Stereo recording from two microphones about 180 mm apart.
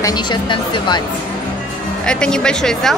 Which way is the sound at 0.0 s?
25° left (ahead or behind).